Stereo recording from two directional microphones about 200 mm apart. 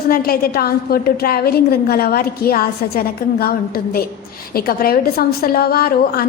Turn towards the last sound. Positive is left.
turn(degrees=50)  # may be behind; listen again after turning